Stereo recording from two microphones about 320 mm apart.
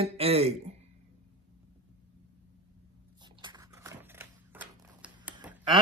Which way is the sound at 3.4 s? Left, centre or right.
Centre.